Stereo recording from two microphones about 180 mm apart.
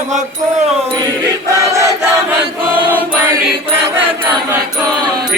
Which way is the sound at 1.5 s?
15° right (ahead or behind).